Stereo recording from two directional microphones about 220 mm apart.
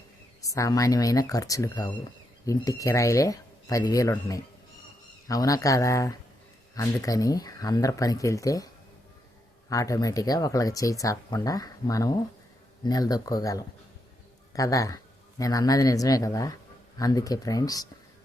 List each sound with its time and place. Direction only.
0.4 s speech: 15° left (ahead or behind)